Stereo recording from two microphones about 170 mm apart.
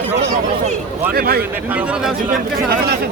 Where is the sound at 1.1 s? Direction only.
65° right (ahead or behind).